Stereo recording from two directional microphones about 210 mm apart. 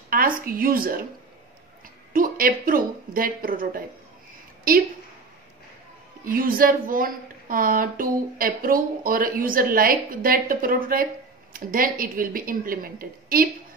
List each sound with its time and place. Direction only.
0.1 s a woman's voice: 45° right (ahead or behind)
2.1 s a woman's voice: 40° right (ahead or behind)
6.2 s a woman's voice: 40° right (ahead or behind)